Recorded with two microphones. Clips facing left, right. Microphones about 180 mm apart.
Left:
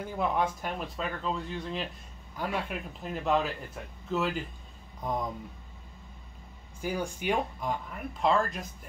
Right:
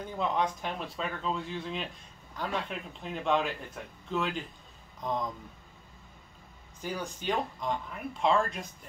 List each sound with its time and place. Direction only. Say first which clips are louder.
0.0 s speech: left 1 dB; 5° left (ahead or behind)
6.8 s speech: left 4 dB; 10° left (ahead or behind)